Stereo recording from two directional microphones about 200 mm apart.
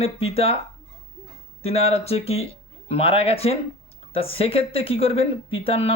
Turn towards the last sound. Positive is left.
turn(degrees=30)  # may be behind; listen again after turning